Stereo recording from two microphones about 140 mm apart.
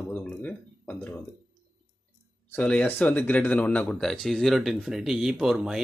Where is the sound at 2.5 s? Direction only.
10° left (ahead or behind).